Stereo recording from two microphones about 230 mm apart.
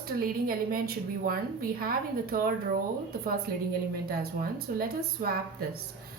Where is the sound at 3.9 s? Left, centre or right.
Right.